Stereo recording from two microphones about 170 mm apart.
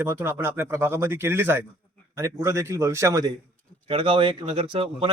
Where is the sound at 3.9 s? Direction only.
30° right (ahead or behind).